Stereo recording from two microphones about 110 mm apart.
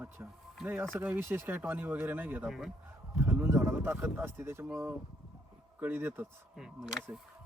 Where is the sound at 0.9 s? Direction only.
20° right (ahead or behind).